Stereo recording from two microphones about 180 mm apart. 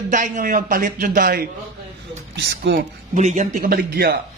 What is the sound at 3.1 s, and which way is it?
A man's voice, 40° right (ahead or behind).